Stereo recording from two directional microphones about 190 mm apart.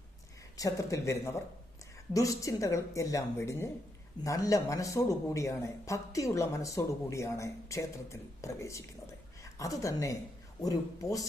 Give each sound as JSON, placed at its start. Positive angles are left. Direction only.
{"t": 0.5, "sound": "a man's voice", "side_deg": 15}